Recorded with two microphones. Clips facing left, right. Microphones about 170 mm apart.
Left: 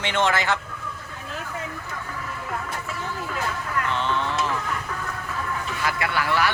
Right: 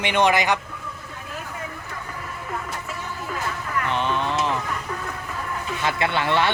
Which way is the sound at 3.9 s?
15° right (ahead or behind).